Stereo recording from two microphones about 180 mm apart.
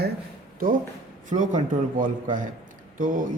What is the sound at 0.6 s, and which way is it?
A man's voice, 55° right (ahead or behind).